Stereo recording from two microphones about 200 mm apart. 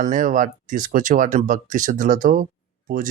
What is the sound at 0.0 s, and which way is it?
A man's voice, 40° right (ahead or behind).